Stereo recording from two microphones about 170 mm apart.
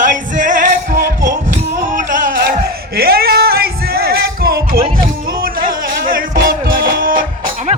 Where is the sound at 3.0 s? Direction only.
65° right (ahead or behind).